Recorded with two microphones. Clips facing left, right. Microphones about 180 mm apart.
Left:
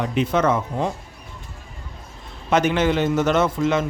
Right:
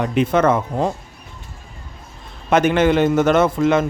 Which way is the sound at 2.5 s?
55° right (ahead or behind).